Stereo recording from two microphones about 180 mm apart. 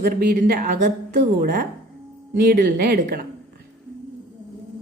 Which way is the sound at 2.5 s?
55° right (ahead or behind).